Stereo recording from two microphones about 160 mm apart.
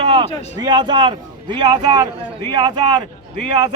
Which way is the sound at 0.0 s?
30° right (ahead or behind).